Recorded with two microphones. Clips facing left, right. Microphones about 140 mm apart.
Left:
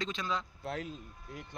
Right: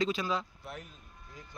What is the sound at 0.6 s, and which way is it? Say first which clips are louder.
Speech: left 6 dB; 90° left.